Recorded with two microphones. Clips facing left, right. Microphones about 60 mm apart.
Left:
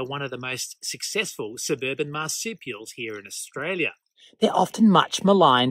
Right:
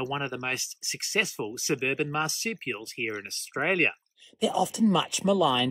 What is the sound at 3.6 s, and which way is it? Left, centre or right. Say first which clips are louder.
Speech: right 1 dB; right.